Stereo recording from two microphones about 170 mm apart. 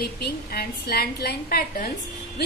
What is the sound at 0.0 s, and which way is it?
A woman's voice, 65° left (ahead or behind).